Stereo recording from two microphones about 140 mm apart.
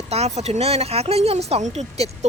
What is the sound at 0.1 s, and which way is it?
Speech, 50° right (ahead or behind).